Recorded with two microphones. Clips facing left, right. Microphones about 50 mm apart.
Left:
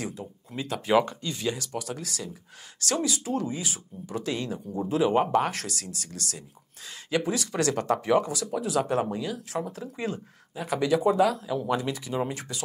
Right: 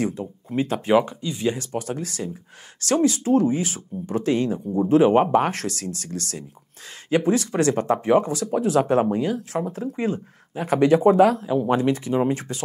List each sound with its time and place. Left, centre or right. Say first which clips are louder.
0.0 s speech: right 9 dB; right
0.9 s speech: right 3 dB; centre
1.5 s speech: right 5 dB; right